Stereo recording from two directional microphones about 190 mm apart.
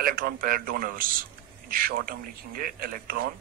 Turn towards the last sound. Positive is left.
turn(degrees=-50)  # may be behind; listen again after turning